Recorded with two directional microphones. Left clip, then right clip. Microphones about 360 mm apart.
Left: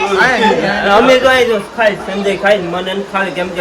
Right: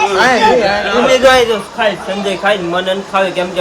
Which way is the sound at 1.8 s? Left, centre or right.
Centre.